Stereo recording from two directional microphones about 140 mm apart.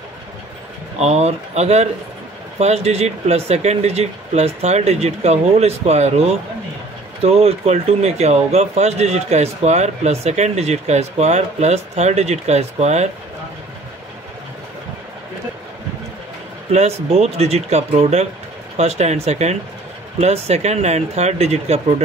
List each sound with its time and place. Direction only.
0.9 s speech: 50° right (ahead or behind)
17.1 s speech: 50° right (ahead or behind)